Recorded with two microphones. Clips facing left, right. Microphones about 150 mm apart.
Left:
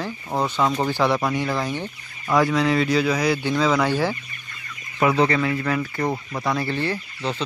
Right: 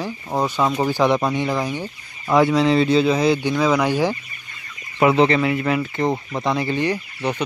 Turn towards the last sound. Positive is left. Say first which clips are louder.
# right 4 dB
turn(degrees=-15)  # may be behind; listen again after turning